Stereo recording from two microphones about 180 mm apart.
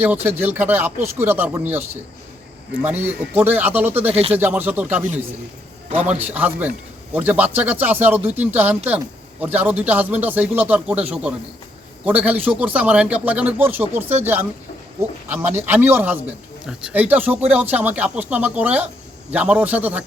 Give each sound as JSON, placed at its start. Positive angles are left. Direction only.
{"t": 0.0, "sound": "a man's voice", "side_deg": -10}
{"t": 2.8, "sound": "a man's voice", "side_deg": -10}
{"t": 4.1, "sound": "speech", "side_deg": -35}
{"t": 4.4, "sound": "a man's voice", "side_deg": -10}
{"t": 15.3, "sound": "a man's voice", "side_deg": -10}